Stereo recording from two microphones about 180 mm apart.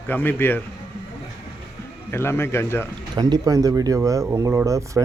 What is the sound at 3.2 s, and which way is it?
Speech, 20° right (ahead or behind).